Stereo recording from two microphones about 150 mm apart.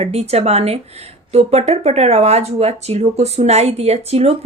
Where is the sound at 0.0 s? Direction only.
45° right (ahead or behind).